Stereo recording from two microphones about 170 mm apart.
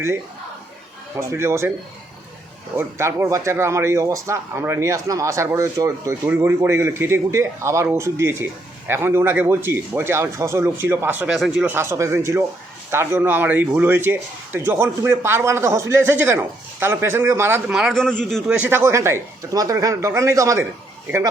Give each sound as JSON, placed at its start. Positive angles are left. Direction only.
{"t": 1.1, "sound": "speech", "side_deg": -15}
{"t": 2.7, "sound": "speech", "side_deg": -15}
{"t": 11.3, "sound": "speech", "side_deg": 0}
{"t": 11.7, "sound": "speech", "side_deg": -15}
{"t": 17.7, "sound": "speech", "side_deg": 0}